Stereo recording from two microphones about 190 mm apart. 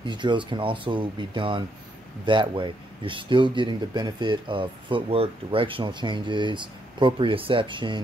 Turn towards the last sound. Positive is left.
turn(degrees=-25)  # may be behind; listen again after turning